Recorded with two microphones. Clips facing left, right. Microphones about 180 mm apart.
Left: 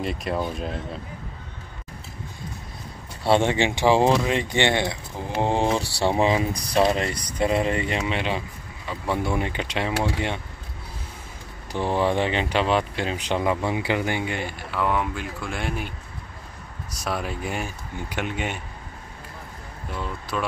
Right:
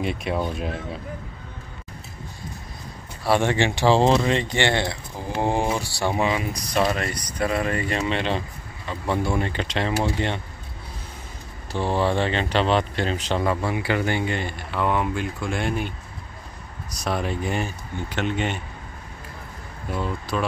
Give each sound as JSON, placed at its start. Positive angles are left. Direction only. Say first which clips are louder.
{"t": 0.0, "sound": "speech", "louder": "right 1 dB", "side_deg": 0}
{"t": 3.3, "sound": "speech", "louder": "left 1 dB", "side_deg": 20}
{"t": 8.0, "sound": "speech", "louder": "right 2 dB", "side_deg": 10}
{"t": 11.7, "sound": "speech", "louder": "even", "side_deg": 15}
{"t": 17.0, "sound": "speech", "louder": "right 3 dB", "side_deg": 5}
{"t": 20.0, "sound": "speech", "louder": "right 3 dB", "side_deg": 0}